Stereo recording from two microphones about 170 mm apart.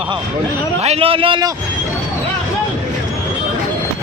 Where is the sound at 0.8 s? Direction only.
35° right (ahead or behind).